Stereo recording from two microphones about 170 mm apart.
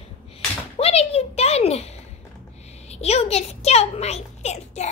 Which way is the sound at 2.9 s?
40° left (ahead or behind).